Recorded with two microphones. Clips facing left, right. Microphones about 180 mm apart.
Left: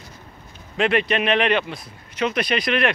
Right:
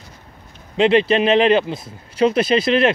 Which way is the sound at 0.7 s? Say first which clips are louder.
Right 6 dB; 25° right (ahead or behind).